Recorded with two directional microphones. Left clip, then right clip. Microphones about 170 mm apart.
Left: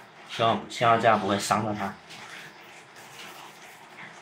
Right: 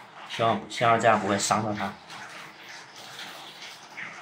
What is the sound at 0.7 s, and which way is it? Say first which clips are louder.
Speech: even; centre (ahead or behind).